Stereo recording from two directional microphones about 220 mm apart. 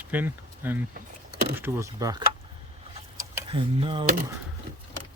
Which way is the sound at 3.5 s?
25° right (ahead or behind).